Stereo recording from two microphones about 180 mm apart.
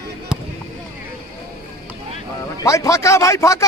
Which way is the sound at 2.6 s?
15° left (ahead or behind).